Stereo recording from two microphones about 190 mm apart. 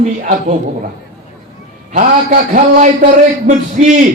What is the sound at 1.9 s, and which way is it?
Speech, 40° right (ahead or behind).